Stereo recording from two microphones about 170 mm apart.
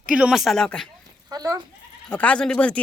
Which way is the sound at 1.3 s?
20° right (ahead or behind).